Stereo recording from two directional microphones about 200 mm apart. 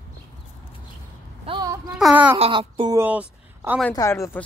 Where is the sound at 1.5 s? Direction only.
20° right (ahead or behind).